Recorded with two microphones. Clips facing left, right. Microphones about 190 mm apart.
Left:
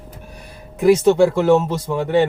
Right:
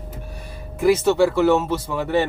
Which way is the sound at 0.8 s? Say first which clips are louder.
Left 4 dB; 15° left (ahead or behind).